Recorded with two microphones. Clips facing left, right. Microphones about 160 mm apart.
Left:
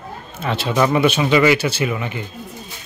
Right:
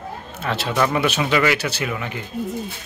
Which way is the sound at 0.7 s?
10° left (ahead or behind).